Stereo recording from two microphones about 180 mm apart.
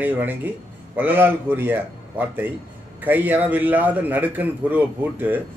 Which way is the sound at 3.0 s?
10° right (ahead or behind).